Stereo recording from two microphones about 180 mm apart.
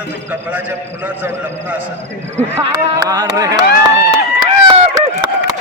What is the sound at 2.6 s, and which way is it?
Speech, 25° right (ahead or behind).